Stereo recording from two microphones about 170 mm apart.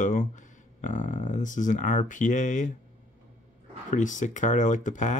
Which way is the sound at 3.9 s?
45° left (ahead or behind).